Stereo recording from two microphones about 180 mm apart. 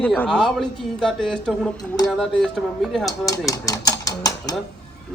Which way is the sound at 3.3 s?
20° left (ahead or behind).